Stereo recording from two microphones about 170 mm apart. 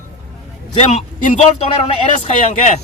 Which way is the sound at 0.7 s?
40° left (ahead or behind).